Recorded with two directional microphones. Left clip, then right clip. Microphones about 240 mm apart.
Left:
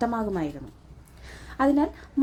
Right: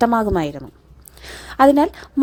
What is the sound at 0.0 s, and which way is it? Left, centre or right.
A woman's voice, right.